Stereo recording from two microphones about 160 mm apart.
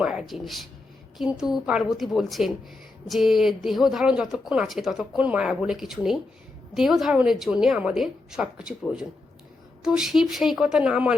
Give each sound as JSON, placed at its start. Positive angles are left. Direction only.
{"t": 0.0, "sound": "a woman's voice", "side_deg": -5}